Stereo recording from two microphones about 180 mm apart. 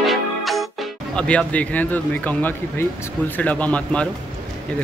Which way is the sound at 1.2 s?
5° left (ahead or behind).